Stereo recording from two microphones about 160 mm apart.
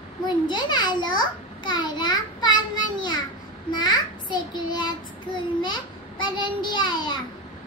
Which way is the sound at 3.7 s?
25° left (ahead or behind).